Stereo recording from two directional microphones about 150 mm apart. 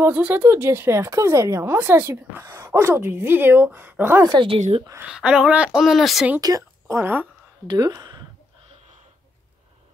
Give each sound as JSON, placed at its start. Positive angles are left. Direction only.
{"t": 0.0, "sound": "speech", "side_deg": -15}
{"t": 4.3, "sound": "speech", "side_deg": -35}
{"t": 4.6, "sound": "speech", "side_deg": -50}
{"t": 5.0, "sound": "speech", "side_deg": -5}
{"t": 6.4, "sound": "speech", "side_deg": -20}
{"t": 7.6, "sound": "speech", "side_deg": -25}